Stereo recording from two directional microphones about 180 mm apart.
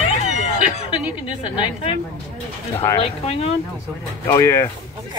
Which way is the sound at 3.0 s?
35° left (ahead or behind).